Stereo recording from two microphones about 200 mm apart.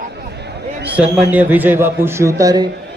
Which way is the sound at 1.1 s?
10° right (ahead or behind).